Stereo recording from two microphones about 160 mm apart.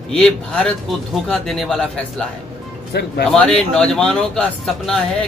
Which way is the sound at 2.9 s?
90° left.